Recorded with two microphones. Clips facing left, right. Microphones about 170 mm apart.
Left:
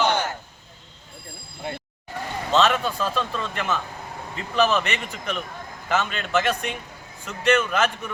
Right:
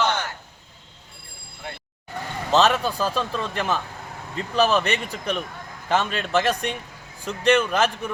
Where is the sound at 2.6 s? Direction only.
35° right (ahead or behind).